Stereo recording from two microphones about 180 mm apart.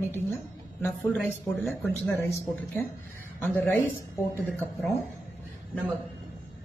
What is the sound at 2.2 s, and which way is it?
A woman's voice, 15° left (ahead or behind).